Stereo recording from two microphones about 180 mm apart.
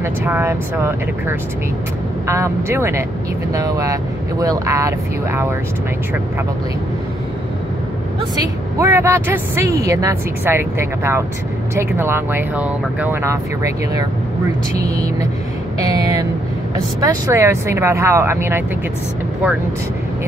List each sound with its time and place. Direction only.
0.0 s a woman's voice: 10° right (ahead or behind)
8.4 s a woman's voice: 15° right (ahead or behind)